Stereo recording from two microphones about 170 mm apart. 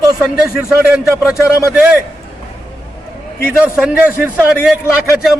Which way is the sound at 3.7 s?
10° right (ahead or behind).